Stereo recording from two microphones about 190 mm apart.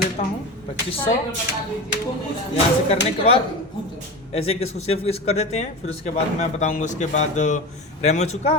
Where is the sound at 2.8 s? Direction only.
35° left (ahead or behind).